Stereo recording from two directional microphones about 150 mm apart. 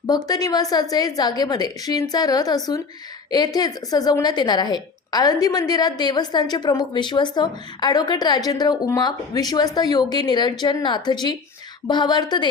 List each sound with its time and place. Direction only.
0.1 s a woman's voice: 25° left (ahead or behind)